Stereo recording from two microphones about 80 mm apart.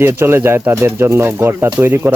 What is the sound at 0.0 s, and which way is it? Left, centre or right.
Speech, right.